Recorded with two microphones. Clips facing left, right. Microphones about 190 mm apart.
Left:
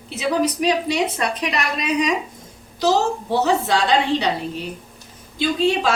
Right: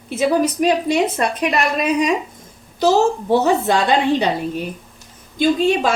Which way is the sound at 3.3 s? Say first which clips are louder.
Right 2 dB; 50° right (ahead or behind).